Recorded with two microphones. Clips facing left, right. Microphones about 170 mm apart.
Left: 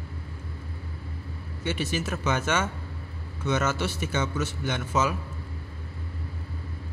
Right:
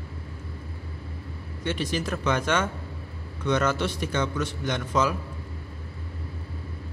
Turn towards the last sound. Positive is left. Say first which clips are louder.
# right 1 dB
turn(degrees=5)  # may be behind; listen again after turning